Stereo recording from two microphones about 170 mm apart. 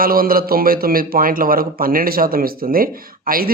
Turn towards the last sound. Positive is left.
turn(degrees=-55)  # may be behind; listen again after turning